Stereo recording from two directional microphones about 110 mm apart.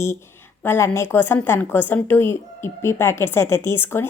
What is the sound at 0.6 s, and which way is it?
A woman's voice, 20° left (ahead or behind).